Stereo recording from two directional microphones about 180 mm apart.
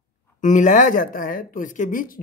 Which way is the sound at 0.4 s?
45° left (ahead or behind).